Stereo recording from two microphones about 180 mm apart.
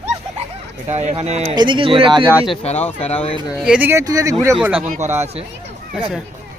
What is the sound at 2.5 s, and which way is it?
Speech, 35° left (ahead or behind).